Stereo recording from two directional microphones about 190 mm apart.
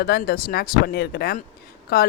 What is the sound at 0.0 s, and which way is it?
Speech, 55° left (ahead or behind).